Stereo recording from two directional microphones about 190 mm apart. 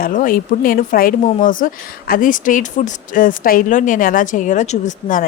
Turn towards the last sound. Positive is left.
turn(degrees=40)  # may be behind; listen again after turning